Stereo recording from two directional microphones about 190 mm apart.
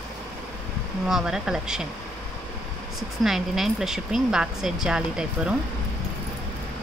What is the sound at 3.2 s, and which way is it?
Speech, centre (ahead or behind).